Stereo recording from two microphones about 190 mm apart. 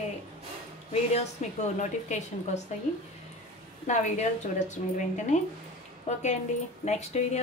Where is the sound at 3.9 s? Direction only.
40° left (ahead or behind).